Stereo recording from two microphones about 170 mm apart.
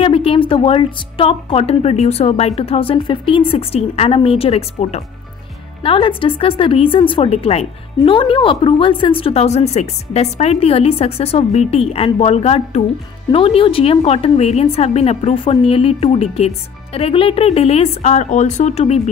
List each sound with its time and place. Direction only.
0.0 s a woman's voice: 35° left (ahead or behind)